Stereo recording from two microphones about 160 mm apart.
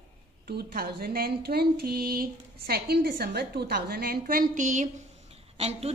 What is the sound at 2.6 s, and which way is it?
A woman's voice, 75° right (ahead or behind).